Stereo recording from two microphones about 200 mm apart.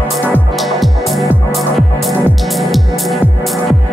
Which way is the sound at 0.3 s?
Centre (ahead or behind).